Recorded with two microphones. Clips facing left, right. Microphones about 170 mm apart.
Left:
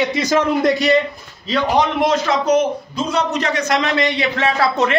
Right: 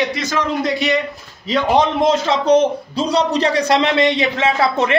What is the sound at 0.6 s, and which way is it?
Speech, 40° left (ahead or behind).